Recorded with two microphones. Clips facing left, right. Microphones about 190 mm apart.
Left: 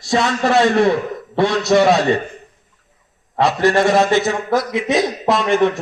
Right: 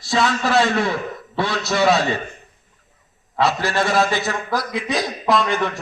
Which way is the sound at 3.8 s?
20° left (ahead or behind).